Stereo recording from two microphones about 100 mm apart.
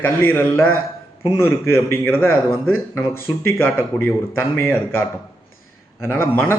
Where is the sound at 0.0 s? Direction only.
20° left (ahead or behind).